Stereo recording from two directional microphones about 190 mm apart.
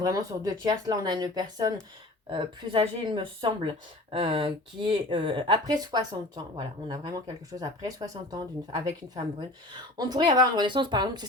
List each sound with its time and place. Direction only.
0.0 s speech: 20° right (ahead or behind)